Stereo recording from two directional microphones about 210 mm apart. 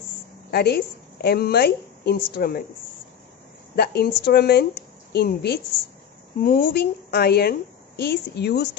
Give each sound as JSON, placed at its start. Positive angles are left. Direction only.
{"t": 0.5, "sound": "a woman's voice", "side_deg": 50}
{"t": 3.7, "sound": "a woman's voice", "side_deg": 50}